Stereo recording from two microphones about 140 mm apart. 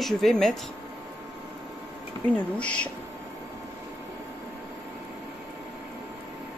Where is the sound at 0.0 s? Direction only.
Centre (ahead or behind).